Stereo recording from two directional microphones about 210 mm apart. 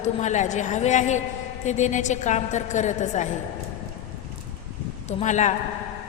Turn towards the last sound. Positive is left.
turn(degrees=35)  # may be behind; listen again after turning